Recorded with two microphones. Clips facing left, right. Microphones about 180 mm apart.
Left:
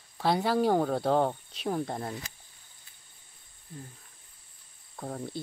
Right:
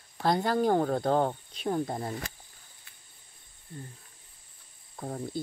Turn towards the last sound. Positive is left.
turn(degrees=0)  # may be behind; listen again after turning